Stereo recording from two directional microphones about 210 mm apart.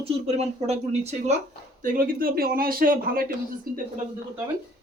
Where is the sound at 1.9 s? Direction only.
45° right (ahead or behind).